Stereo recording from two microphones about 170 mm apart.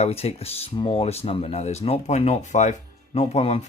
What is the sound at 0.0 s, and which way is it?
Speech, 35° left (ahead or behind).